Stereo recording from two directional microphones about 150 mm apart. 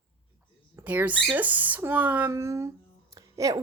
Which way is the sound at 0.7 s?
10° right (ahead or behind).